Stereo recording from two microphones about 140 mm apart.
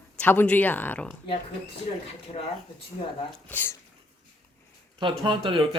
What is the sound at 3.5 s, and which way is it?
Speech, 15° left (ahead or behind).